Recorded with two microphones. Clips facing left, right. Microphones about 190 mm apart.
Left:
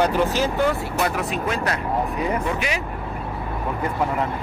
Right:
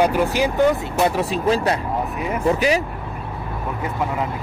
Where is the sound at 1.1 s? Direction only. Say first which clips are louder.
Right 5 dB; 30° right (ahead or behind).